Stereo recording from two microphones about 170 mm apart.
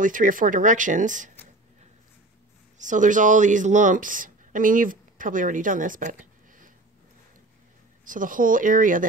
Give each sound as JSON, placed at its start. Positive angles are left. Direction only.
{"t": 0.0, "sound": "speech", "side_deg": -50}
{"t": 2.8, "sound": "speech", "side_deg": -50}
{"t": 8.0, "sound": "speech", "side_deg": -50}